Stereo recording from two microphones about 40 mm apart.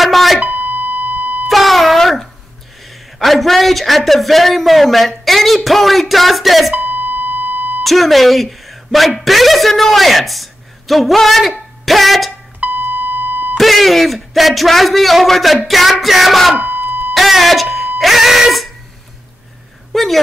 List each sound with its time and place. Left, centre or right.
0.0 s beep: centre
0.4 s beep: right
1.5 s beep: centre
3.2 s a man's voice: centre
6.7 s beep: right
7.8 s speech: centre
12.5 s beep: right
13.6 s speech: centre
16.5 s a sound: right
17.1 s a sound: centre
19.9 s a woman's voice: centre